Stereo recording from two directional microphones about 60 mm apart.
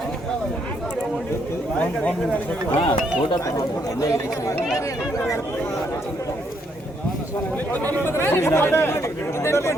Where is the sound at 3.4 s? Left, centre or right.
Left.